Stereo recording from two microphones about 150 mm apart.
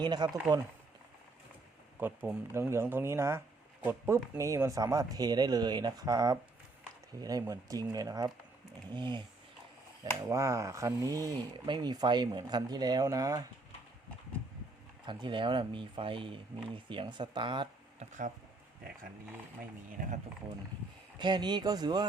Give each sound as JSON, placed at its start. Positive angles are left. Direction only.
{"t": 0.0, "sound": "speech", "side_deg": -30}
{"t": 2.0, "sound": "speech", "side_deg": -15}
{"t": 10.0, "sound": "speech", "side_deg": -20}
{"t": 15.0, "sound": "speech", "side_deg": -30}
{"t": 19.9, "sound": "speech", "side_deg": -65}
{"t": 21.2, "sound": "speech", "side_deg": -30}